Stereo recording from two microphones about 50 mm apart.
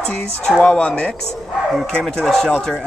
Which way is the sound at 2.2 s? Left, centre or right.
Centre.